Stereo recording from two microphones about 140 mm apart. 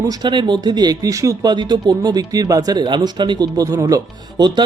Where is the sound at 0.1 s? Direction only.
35° right (ahead or behind).